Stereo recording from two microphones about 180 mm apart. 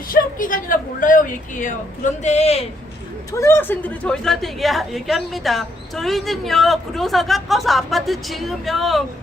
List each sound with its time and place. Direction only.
0.1 s a man's voice: 50° left (ahead or behind)
3.3 s a woman's voice: 15° left (ahead or behind)